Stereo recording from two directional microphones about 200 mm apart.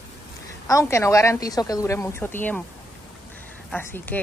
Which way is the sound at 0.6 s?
15° left (ahead or behind).